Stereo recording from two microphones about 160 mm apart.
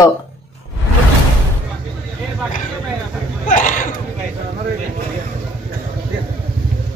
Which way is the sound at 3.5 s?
55° left (ahead or behind).